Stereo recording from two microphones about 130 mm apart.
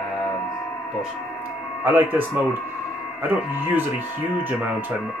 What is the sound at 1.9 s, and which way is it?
Speech, 15° right (ahead or behind).